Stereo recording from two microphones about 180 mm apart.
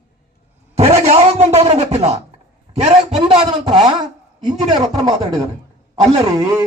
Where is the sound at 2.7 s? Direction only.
25° right (ahead or behind).